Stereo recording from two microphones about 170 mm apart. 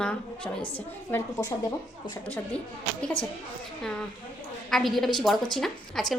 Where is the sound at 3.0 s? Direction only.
5° left (ahead or behind).